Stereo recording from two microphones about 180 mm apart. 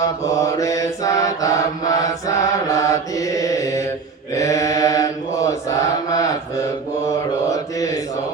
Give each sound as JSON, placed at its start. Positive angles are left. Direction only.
{"t": 0.0, "sound": "mantra", "side_deg": 20}